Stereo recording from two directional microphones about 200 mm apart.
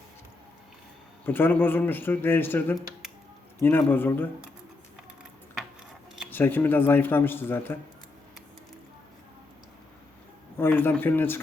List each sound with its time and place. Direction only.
1.2 s a man's voice: 10° left (ahead or behind)
6.3 s a man's voice: 10° left (ahead or behind)
10.6 s a man's voice: 10° left (ahead or behind)